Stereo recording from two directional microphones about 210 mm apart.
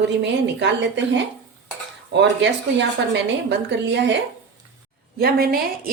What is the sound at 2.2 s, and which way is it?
A woman's voice, 55° right (ahead or behind).